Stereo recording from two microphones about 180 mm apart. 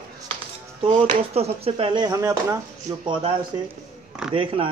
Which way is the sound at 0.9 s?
35° right (ahead or behind).